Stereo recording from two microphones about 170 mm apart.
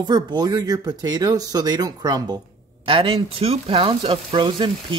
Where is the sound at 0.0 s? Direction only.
25° right (ahead or behind).